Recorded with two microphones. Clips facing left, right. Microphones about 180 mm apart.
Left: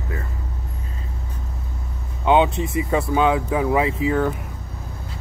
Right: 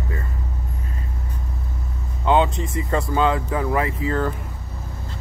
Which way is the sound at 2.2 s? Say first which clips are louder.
Left 2 dB; 15° left (ahead or behind).